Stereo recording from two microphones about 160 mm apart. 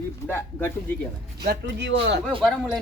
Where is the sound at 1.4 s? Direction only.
90° right.